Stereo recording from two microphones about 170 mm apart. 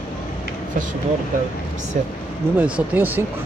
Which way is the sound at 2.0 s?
50° right (ahead or behind).